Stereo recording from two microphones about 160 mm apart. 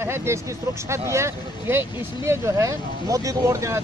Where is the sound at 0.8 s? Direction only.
15° right (ahead or behind).